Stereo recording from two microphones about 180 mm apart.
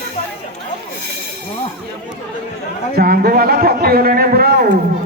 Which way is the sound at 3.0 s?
55° right (ahead or behind).